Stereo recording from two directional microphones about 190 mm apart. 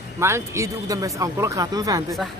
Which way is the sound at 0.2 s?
15° right (ahead or behind).